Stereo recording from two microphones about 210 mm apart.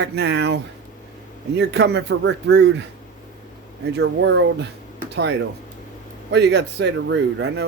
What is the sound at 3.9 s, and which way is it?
Speech, 60° right (ahead or behind).